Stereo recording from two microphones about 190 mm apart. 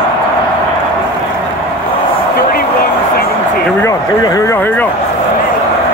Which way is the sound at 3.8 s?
20° left (ahead or behind).